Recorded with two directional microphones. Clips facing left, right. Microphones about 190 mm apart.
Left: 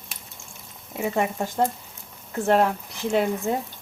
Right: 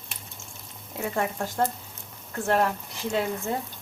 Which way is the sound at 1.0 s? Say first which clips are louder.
Left 4 dB; 15° left (ahead or behind).